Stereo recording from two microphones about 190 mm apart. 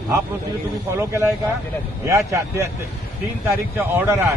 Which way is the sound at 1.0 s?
15° right (ahead or behind).